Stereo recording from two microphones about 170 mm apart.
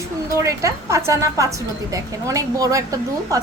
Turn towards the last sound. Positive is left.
turn(degrees=-20)  # may be behind; listen again after turning